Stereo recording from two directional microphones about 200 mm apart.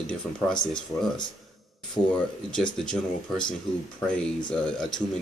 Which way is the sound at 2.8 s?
5° left (ahead or behind).